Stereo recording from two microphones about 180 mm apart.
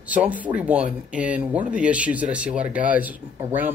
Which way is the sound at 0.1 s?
10° right (ahead or behind).